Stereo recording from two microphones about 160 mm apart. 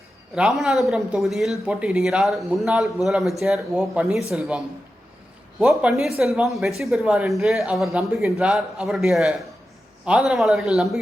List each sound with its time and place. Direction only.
0.3 s speech: 5° right (ahead or behind)